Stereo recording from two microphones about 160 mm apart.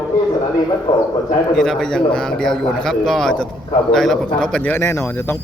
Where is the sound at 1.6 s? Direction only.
5° left (ahead or behind).